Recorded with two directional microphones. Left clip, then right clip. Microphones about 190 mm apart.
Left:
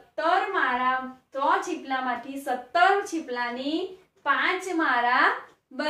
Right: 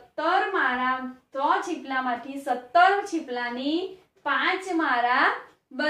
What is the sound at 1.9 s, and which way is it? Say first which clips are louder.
A woman's voice: right 1 dB; 10° right (ahead or behind).